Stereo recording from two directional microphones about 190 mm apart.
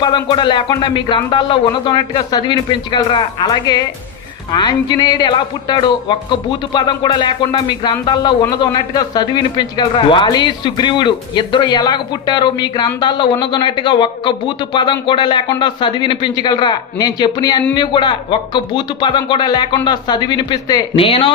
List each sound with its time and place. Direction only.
0.0 s speech: 25° left (ahead or behind)